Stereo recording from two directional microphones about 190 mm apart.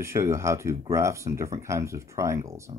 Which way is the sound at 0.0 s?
15° right (ahead or behind).